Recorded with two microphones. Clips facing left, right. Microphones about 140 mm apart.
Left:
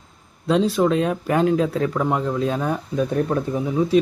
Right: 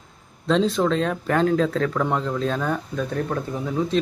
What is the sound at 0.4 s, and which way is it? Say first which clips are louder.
Speech: left 2 dB; 10° left (ahead or behind).